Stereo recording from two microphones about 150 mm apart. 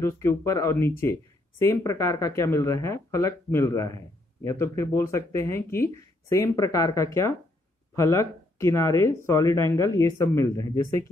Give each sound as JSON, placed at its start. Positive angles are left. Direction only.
{"t": 0.0, "sound": "speech", "side_deg": 20}